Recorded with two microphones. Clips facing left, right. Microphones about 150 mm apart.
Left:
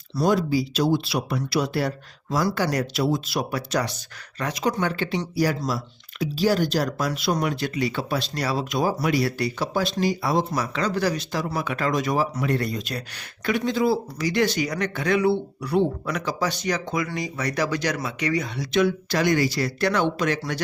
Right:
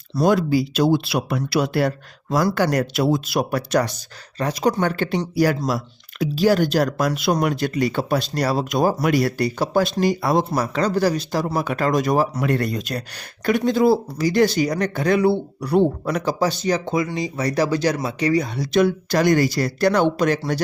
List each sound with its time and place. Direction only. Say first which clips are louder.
0.3 s speech: right 3 dB; 60° right (ahead or behind)
4.4 s speech: right 5 dB; 35° right (ahead or behind)
4.8 s speech: right 4 dB; 50° right (ahead or behind)